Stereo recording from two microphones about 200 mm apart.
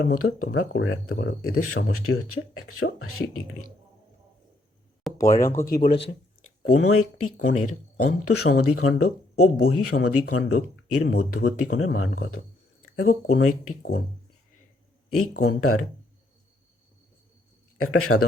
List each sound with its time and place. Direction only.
0.0 s speech: 90° left
5.1 s a sound: centre (ahead or behind)
5.4 s speech: 15° left (ahead or behind)
5.7 s speech: 50° left (ahead or behind)
6.7 s speech: 90° left
15.1 s speech: 90° left
17.7 s speech: 90° left